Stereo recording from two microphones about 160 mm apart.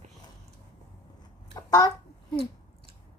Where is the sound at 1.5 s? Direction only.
25° left (ahead or behind).